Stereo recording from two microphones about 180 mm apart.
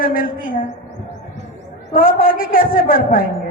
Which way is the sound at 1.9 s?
50° left (ahead or behind).